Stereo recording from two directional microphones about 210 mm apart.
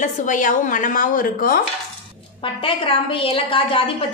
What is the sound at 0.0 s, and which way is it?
Speech, 40° left (ahead or behind).